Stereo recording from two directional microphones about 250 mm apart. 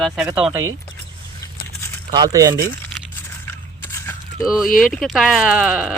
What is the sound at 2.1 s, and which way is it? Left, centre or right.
Speech, centre.